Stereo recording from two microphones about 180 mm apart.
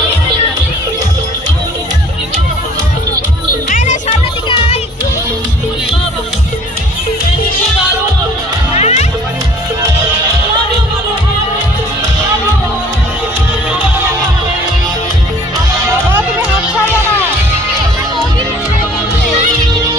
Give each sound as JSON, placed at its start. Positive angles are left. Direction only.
{"t": 3.7, "sound": "music", "side_deg": 50}
{"t": 4.4, "sound": "music", "side_deg": 30}
{"t": 8.7, "sound": "music", "side_deg": 35}
{"t": 19.7, "sound": "music", "side_deg": -20}